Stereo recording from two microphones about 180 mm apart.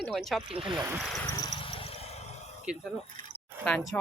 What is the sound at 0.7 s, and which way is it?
Speech, 15° right (ahead or behind).